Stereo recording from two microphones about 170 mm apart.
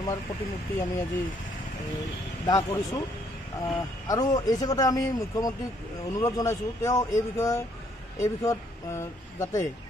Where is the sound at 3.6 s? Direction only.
20° left (ahead or behind).